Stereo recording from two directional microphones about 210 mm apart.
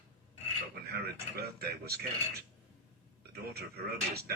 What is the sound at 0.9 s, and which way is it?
Speech, 50° right (ahead or behind).